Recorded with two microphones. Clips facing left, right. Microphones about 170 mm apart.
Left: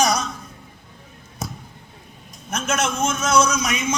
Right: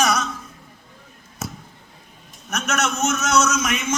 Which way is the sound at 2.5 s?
30° left (ahead or behind).